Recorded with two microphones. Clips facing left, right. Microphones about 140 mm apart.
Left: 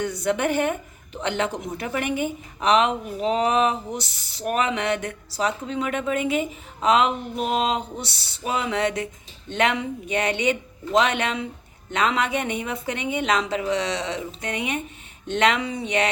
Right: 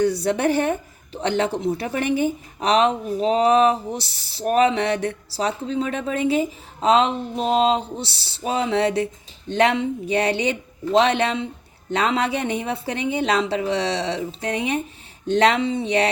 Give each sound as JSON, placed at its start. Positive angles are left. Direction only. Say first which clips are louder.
{"t": 0.0, "sound": "a woman's voice", "louder": "right 4 dB", "side_deg": -35}